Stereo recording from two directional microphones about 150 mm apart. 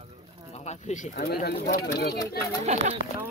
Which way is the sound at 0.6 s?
50° left (ahead or behind).